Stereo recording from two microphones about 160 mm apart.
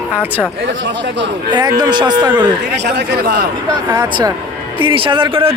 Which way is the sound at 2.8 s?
90° right.